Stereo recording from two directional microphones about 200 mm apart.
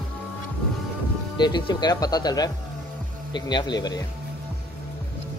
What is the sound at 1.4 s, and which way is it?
Speech, 20° left (ahead or behind).